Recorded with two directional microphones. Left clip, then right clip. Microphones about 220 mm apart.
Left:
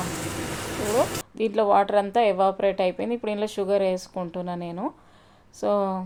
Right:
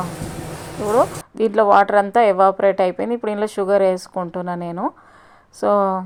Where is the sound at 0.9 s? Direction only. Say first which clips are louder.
Right 8 dB; 20° right (ahead or behind).